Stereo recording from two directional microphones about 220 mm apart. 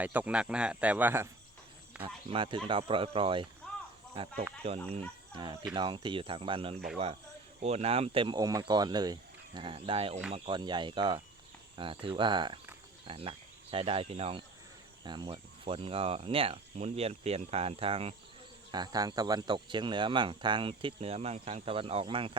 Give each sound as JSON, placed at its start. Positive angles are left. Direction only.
{"t": 0.0, "sound": "speech", "side_deg": -5}
{"t": 2.0, "sound": "speech", "side_deg": -25}
{"t": 4.9, "sound": "speech", "side_deg": -25}